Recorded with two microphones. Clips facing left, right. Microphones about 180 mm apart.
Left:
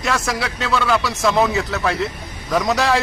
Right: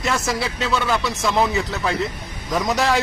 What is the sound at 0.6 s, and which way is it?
Speech, 20° right (ahead or behind).